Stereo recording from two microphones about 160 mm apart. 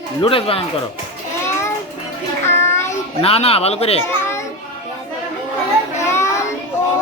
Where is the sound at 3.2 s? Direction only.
40° left (ahead or behind).